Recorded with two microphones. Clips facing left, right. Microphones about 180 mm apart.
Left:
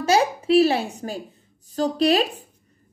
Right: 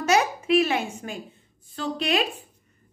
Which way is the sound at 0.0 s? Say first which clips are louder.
Left 3 dB; 30° left (ahead or behind).